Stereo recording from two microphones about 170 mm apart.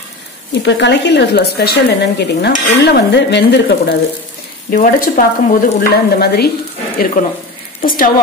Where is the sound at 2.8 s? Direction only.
75° left (ahead or behind).